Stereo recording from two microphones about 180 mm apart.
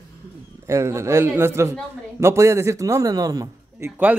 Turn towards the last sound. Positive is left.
turn(degrees=-10)  # may be behind; listen again after turning